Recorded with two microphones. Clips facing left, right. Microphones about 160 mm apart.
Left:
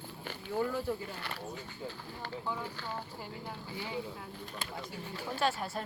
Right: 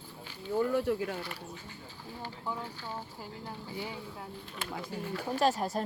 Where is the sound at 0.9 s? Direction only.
80° right.